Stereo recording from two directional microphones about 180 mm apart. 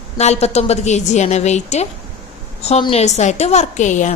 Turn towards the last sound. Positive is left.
turn(degrees=40)  # may be behind; listen again after turning